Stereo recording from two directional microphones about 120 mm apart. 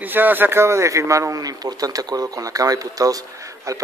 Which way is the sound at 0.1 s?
15° right (ahead or behind).